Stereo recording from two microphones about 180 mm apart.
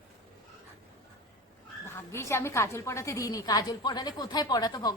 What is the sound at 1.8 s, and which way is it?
A woman's voice, 15° left (ahead or behind).